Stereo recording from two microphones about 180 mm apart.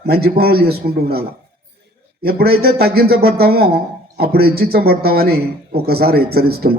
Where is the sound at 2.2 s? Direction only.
60° right (ahead or behind).